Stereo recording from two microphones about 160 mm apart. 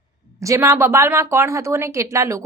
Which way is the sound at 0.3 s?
20° right (ahead or behind).